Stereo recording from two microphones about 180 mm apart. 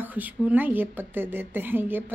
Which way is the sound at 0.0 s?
10° right (ahead or behind).